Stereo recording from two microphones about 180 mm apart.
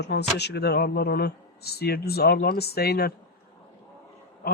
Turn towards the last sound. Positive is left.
turn(degrees=55)  # may be behind; listen again after turning